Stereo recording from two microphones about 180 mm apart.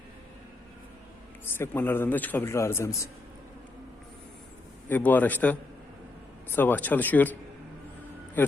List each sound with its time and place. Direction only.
1.5 s a man's voice: 10° left (ahead or behind)
4.9 s a man's voice: 10° left (ahead or behind)
8.4 s a man's voice: 10° left (ahead or behind)